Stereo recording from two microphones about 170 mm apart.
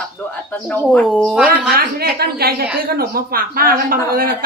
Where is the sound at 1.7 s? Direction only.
65° right (ahead or behind).